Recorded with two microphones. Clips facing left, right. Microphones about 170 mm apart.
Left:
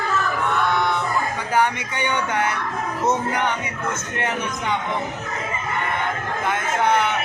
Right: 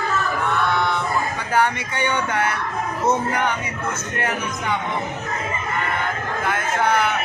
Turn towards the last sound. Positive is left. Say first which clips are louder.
# even
turn(degrees=20)  # may be behind; listen again after turning